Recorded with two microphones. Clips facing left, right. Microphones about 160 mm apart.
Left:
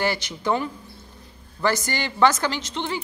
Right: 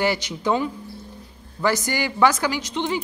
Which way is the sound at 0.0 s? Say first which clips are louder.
Right 2 dB; 15° right (ahead or behind).